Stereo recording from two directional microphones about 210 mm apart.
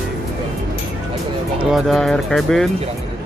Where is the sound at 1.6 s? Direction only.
Centre (ahead or behind).